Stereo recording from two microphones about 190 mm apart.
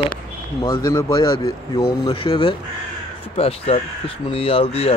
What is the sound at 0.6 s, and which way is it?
Speech, 15° left (ahead or behind).